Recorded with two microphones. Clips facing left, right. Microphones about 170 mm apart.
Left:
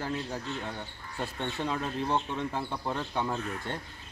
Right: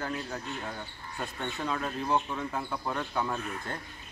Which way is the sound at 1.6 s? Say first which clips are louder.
Even; 25° left (ahead or behind).